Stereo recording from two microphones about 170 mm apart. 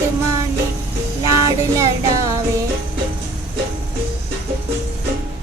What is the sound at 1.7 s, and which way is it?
Music, 20° right (ahead or behind).